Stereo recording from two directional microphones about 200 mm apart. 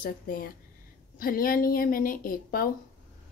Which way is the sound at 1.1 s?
45° left (ahead or behind).